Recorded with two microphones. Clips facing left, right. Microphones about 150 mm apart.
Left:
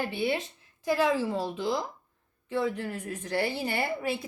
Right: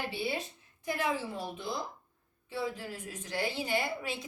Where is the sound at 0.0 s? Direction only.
60° left (ahead or behind).